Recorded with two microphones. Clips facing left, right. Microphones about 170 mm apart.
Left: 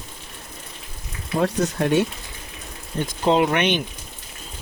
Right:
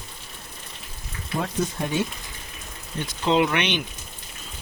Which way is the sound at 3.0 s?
45° left (ahead or behind).